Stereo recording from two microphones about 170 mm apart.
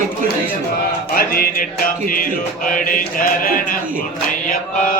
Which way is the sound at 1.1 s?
60° left (ahead or behind).